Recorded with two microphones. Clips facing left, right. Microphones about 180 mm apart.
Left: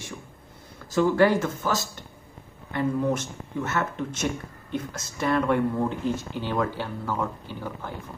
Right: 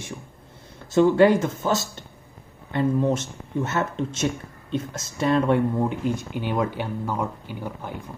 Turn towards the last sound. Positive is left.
turn(degrees=-15)  # may be behind; listen again after turning